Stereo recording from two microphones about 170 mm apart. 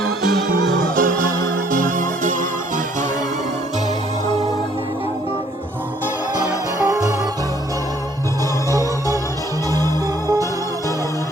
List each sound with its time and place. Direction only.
0.8 s music: 55° right (ahead or behind)
9.7 s music: 20° right (ahead or behind)